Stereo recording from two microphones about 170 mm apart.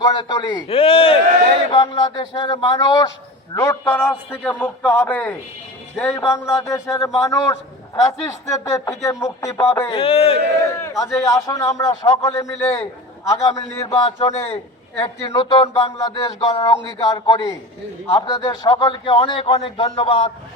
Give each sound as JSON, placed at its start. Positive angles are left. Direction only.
{"t": 0.0, "sound": "a man's voice", "side_deg": 25}
{"t": 9.9, "sound": "a man's voice", "side_deg": 35}
{"t": 10.8, "sound": "a man's voice", "side_deg": 15}
{"t": 14.2, "sound": "a man's voice", "side_deg": 35}
{"t": 15.3, "sound": "a man's voice", "side_deg": 25}
{"t": 15.6, "sound": "a man's voice", "side_deg": 35}
{"t": 16.0, "sound": "a man's voice", "side_deg": 20}